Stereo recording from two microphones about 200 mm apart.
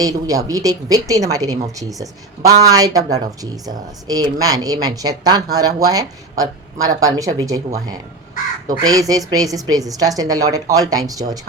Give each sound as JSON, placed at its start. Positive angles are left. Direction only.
{"t": 0.0, "sound": "speech", "side_deg": -20}